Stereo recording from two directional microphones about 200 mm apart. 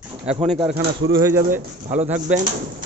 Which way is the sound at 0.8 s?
55° right (ahead or behind).